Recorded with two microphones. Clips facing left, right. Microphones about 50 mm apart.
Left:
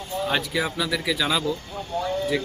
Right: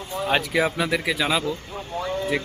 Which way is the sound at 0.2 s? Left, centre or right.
Right.